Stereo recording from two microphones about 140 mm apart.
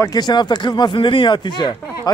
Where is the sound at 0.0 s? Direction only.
30° left (ahead or behind).